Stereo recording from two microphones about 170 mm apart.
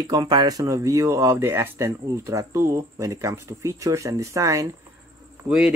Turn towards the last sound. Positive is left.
turn(degrees=-5)  # may be behind; listen again after turning